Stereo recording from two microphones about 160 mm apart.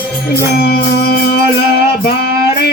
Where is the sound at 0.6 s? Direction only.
80° left.